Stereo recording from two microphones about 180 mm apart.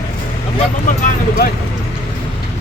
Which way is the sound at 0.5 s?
45° left (ahead or behind).